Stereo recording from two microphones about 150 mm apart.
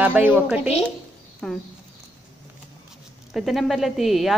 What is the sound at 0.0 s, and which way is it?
Speech, 10° right (ahead or behind).